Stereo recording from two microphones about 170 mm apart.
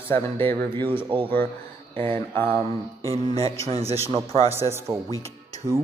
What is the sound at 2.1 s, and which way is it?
Speech, 10° left (ahead or behind).